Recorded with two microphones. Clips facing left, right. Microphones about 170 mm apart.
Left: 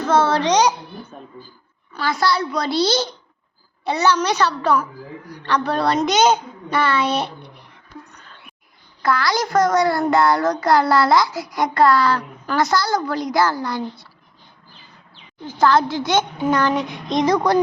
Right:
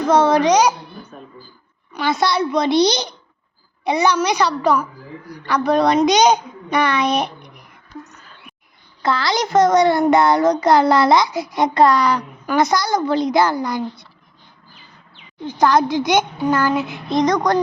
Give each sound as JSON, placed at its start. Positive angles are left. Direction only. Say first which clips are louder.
{"t": 0.0, "sound": "a child's voice", "louder": "right 3 dB", "side_deg": -15}
{"t": 1.9, "sound": "a child's voice", "louder": "right 2 dB", "side_deg": -20}
{"t": 9.0, "sound": "a child's voice", "louder": "even", "side_deg": -25}
{"t": 15.4, "sound": "a child's voice", "louder": "right 1 dB", "side_deg": -15}
{"t": 16.4, "sound": "child singing", "louder": "right 1 dB", "side_deg": -5}
{"t": 17.2, "sound": "a child's voice", "louder": "left 1 dB", "side_deg": 5}